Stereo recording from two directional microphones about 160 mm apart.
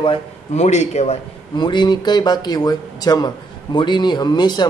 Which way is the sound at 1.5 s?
30° left (ahead or behind).